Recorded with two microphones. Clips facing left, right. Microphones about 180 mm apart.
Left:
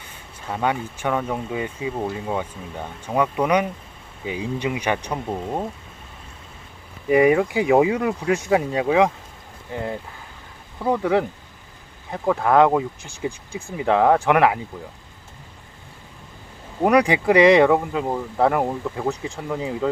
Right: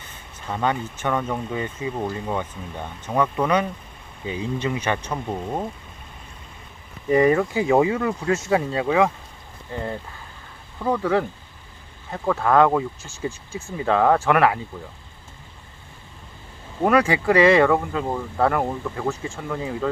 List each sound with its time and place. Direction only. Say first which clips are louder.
0.4 s speech: even; 10° left (ahead or behind)
7.1 s speech: left 1 dB; 10° left (ahead or behind)
16.8 s speech: left 2 dB; 15° left (ahead or behind)